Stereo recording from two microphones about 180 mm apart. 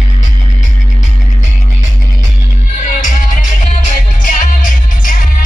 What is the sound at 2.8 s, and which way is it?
Music, 45° left (ahead or behind).